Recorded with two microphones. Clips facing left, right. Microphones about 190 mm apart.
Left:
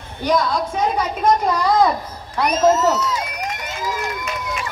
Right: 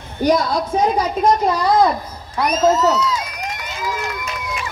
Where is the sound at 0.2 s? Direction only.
40° right (ahead or behind).